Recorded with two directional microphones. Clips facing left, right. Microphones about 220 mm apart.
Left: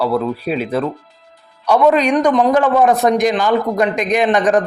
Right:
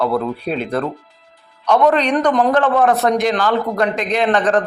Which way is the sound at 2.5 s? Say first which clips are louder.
Left 2 dB; 10° left (ahead or behind).